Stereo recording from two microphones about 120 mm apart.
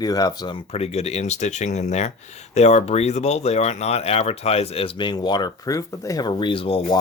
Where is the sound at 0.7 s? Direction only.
60° left (ahead or behind).